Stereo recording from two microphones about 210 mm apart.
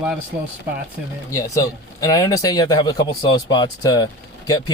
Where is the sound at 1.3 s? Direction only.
15° left (ahead or behind).